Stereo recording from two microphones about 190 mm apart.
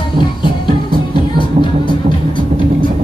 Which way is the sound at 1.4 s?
25° left (ahead or behind).